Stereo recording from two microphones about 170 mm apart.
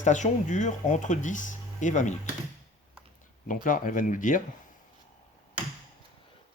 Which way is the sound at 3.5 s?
55° left (ahead or behind).